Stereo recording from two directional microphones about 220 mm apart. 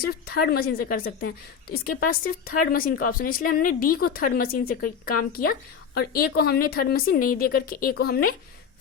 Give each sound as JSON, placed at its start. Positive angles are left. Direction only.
{"t": 0.0, "sound": "speech", "side_deg": 45}